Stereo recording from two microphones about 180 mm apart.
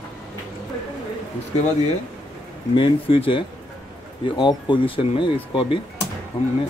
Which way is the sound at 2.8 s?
30° left (ahead or behind).